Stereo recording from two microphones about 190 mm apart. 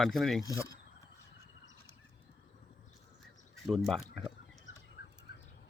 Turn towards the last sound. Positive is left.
turn(degrees=55)  # may be behind; listen again after turning